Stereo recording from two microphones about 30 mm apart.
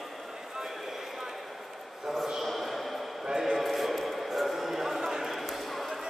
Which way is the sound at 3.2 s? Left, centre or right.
Centre.